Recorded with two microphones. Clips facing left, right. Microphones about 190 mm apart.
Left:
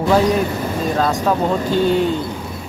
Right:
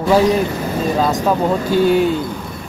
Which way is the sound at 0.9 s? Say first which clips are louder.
Right 1 dB; 5° right (ahead or behind).